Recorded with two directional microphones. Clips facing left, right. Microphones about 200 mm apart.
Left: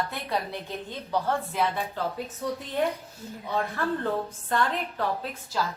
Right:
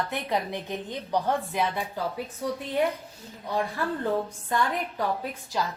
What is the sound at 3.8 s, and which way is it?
A woman's voice, 10° right (ahead or behind).